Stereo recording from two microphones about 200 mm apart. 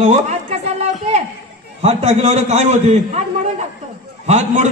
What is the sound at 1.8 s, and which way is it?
A man's voice, 35° right (ahead or behind).